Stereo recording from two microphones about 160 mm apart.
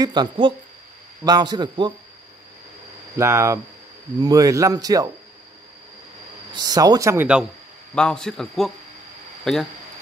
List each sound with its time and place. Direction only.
0.0 s speech: 25° right (ahead or behind)
3.2 s speech: 15° right (ahead or behind)
6.5 s speech: 25° right (ahead or behind)
7.9 s a man's voice: 5° left (ahead or behind)